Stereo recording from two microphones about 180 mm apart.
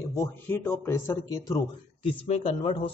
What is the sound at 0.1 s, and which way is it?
Speech, 15° left (ahead or behind).